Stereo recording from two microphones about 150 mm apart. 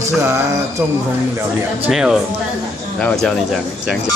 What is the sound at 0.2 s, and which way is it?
Speech, 20° right (ahead or behind).